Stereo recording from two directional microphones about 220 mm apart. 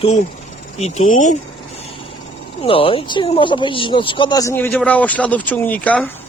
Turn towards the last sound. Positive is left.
turn(degrees=5)  # may be behind; listen again after turning